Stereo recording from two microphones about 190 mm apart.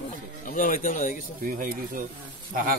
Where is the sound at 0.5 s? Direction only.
45° left (ahead or behind).